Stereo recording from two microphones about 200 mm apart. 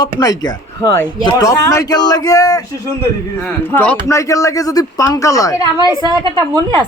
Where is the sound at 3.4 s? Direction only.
5° left (ahead or behind).